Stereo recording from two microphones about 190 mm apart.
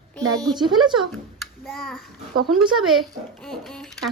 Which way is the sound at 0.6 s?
25° right (ahead or behind).